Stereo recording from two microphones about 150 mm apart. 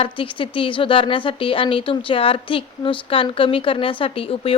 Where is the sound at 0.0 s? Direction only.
35° left (ahead or behind).